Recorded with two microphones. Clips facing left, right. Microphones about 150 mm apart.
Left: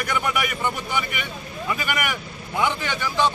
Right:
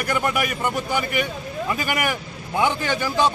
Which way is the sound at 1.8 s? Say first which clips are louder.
Right 3 dB; 35° right (ahead or behind).